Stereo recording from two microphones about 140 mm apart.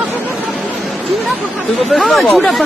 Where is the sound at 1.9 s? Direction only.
Centre (ahead or behind).